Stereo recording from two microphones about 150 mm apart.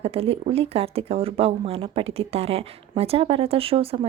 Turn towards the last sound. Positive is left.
turn(degrees=-40)  # may be behind; listen again after turning